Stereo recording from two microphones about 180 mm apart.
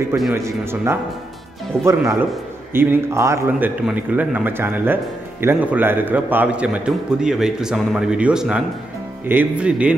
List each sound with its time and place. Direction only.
0.3 s a man's voice: 15° right (ahead or behind)